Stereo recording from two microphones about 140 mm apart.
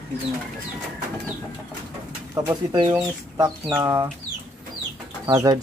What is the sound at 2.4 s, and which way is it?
Speech, 30° right (ahead or behind).